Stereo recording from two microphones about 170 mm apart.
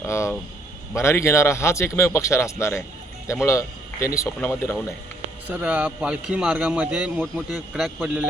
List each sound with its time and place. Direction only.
0.0 s speech: 15° left (ahead or behind)
5.5 s a man's voice: 10° right (ahead or behind)